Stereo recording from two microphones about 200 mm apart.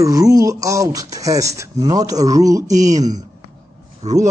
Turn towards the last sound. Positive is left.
turn(degrees=-35)  # may be behind; listen again after turning